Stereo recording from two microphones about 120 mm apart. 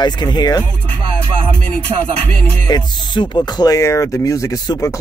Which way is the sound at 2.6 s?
35° left (ahead or behind).